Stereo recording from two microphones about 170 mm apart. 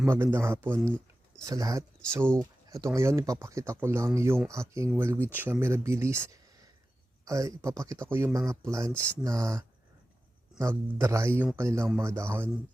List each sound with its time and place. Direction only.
0.0 s speech: 15° right (ahead or behind)